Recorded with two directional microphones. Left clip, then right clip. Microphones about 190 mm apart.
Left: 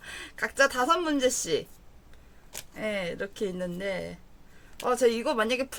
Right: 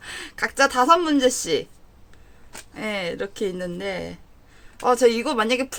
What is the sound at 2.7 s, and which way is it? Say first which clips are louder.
Speech: right 4 dB; 20° right (ahead or behind).